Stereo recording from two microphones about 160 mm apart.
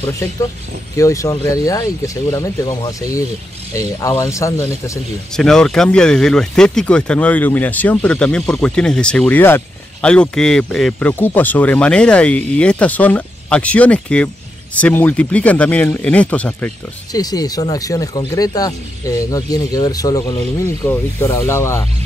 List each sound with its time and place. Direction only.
0.0 s speech: 20° left (ahead or behind)
5.3 s speech: 5° left (ahead or behind)
17.1 s speech: 25° left (ahead or behind)